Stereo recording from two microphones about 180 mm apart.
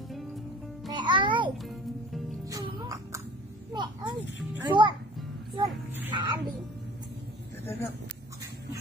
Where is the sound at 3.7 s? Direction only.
25° right (ahead or behind).